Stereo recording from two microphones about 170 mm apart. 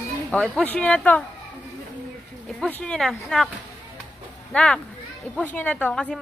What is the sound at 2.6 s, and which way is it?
Speech, 5° left (ahead or behind).